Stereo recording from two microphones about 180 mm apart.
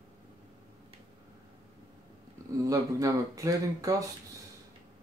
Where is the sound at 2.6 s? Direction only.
20° right (ahead or behind).